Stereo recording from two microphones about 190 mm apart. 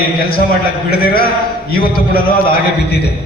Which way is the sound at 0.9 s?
50° left (ahead or behind).